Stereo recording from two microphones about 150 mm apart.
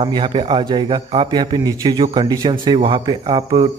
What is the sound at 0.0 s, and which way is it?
A man's voice, 35° right (ahead or behind).